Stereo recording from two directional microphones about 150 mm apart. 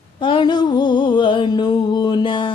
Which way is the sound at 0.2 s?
35° left (ahead or behind).